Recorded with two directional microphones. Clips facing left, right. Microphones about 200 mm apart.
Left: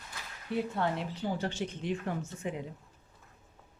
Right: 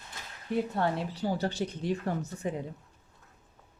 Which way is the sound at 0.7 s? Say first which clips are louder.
Right 2 dB; 40° right (ahead or behind).